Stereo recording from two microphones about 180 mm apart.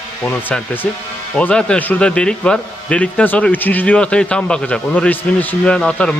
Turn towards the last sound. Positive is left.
turn(degrees=5)  # may be behind; listen again after turning